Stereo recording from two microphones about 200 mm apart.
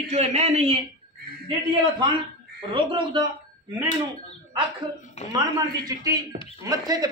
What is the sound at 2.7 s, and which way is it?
Speech, 25° right (ahead or behind).